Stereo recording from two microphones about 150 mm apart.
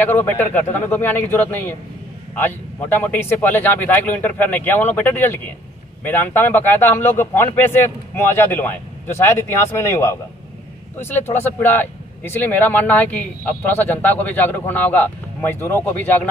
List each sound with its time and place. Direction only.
0.0 s a man's voice: 10° left (ahead or behind)